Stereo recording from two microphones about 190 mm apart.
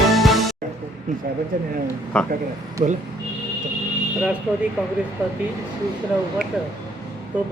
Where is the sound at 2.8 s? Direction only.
35° right (ahead or behind).